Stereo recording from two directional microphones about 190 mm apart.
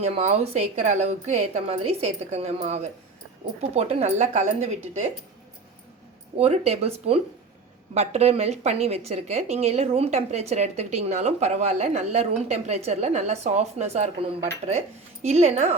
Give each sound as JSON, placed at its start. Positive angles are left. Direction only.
{"t": 0.0, "sound": "a woman's voice", "side_deg": -35}
{"t": 6.3, "sound": "a woman's voice", "side_deg": -35}